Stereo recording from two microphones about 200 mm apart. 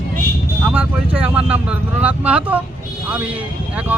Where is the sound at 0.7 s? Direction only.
10° right (ahead or behind).